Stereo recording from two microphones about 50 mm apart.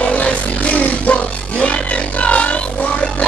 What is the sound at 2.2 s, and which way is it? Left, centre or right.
Music, left.